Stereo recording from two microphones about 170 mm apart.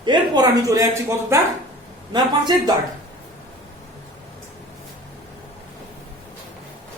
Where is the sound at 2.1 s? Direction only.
25° right (ahead or behind).